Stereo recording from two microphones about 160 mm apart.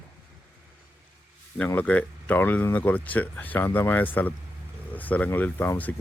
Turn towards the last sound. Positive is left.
turn(degrees=10)  # may be behind; listen again after turning